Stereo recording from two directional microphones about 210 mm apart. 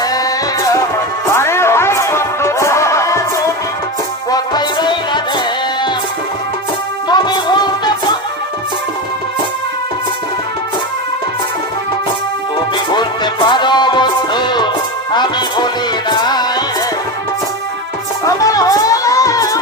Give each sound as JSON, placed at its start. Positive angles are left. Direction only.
{"t": 0.0, "sound": "music", "side_deg": 15}
{"t": 7.1, "sound": "music", "side_deg": 20}
{"t": 12.7, "sound": "music", "side_deg": 20}
{"t": 18.3, "sound": "music", "side_deg": 15}